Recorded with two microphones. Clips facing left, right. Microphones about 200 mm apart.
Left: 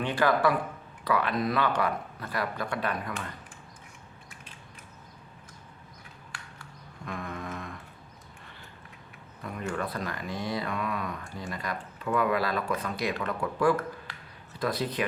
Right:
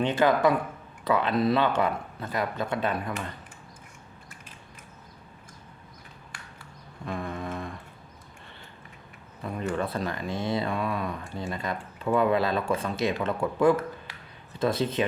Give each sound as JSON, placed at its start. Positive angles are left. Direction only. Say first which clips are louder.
{"t": 0.0, "sound": "speech", "louder": "right 3 dB", "side_deg": -20}
{"t": 7.0, "sound": "mantra", "louder": "right 4 dB", "side_deg": -30}
{"t": 9.4, "sound": "speech", "louder": "right 4 dB", "side_deg": -25}